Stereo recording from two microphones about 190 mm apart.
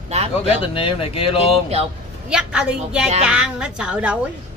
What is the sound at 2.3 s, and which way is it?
A woman's voice, 5° right (ahead or behind).